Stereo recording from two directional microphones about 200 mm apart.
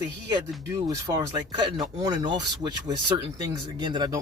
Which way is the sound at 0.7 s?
15° right (ahead or behind).